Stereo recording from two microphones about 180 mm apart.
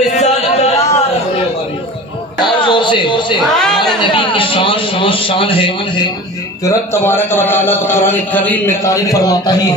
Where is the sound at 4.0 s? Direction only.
30° left (ahead or behind).